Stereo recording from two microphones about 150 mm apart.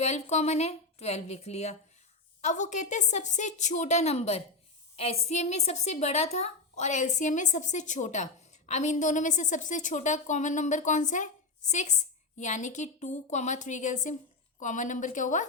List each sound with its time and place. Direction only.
0.0 s a woman's voice: 50° left (ahead or behind)